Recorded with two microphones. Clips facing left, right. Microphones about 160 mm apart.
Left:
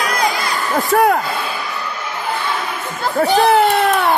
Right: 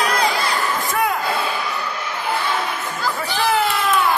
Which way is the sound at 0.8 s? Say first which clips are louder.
Left 8 dB; 70° left (ahead or behind).